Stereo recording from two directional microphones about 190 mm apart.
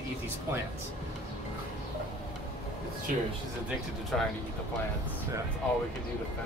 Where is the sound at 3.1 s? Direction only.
45° right (ahead or behind).